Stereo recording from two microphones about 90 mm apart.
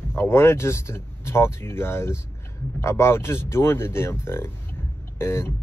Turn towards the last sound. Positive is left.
turn(degrees=30)  # may be behind; listen again after turning